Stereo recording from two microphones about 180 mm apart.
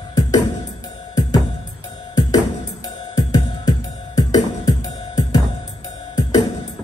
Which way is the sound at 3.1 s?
20° left (ahead or behind).